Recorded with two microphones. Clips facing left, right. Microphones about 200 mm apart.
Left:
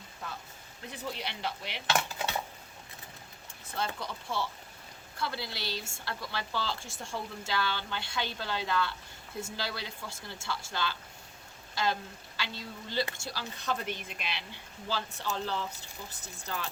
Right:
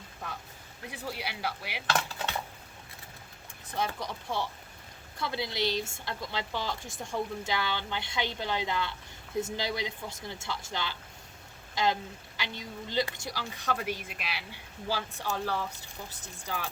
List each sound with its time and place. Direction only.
1.1 s speech: 10° right (ahead or behind)
2.0 s dishes: 10° left (ahead or behind)
3.7 s speech: 15° right (ahead or behind)